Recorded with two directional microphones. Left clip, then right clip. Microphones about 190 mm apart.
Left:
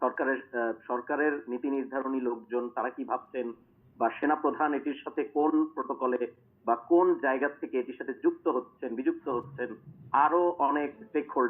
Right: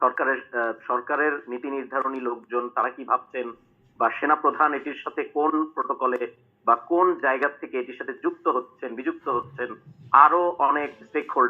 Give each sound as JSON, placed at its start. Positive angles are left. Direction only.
{"t": 0.0, "sound": "speech", "side_deg": -40}